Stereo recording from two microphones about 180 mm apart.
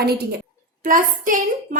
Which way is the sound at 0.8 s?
45° right (ahead or behind).